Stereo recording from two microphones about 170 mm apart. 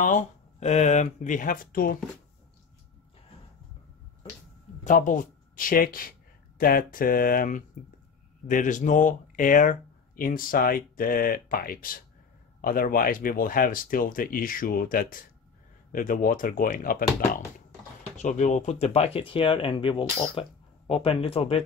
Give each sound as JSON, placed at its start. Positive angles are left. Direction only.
{"t": 0.0, "sound": "speech", "side_deg": 45}
{"t": 4.8, "sound": "speech", "side_deg": 50}
{"t": 18.1, "sound": "speech", "side_deg": 45}